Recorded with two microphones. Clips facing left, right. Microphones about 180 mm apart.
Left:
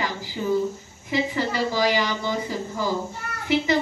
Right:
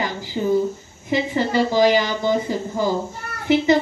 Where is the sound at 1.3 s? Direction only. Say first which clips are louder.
Right 6 dB; 25° right (ahead or behind).